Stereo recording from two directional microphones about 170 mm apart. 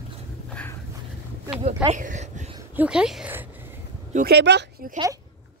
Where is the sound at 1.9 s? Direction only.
45° right (ahead or behind).